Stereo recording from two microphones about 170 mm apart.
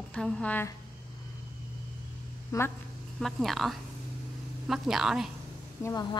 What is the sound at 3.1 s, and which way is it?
A woman's voice, centre (ahead or behind).